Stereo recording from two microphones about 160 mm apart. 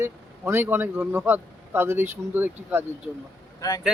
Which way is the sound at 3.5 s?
25° left (ahead or behind).